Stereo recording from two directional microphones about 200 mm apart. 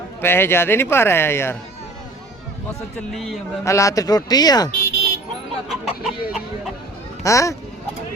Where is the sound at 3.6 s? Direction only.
15° left (ahead or behind).